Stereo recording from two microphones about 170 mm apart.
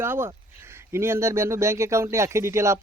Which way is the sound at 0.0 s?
15° right (ahead or behind).